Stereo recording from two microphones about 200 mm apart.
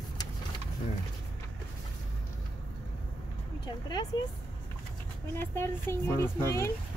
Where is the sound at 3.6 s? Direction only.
20° left (ahead or behind).